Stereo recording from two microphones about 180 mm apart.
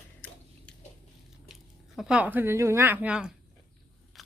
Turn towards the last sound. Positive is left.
turn(degrees=-5)  # may be behind; listen again after turning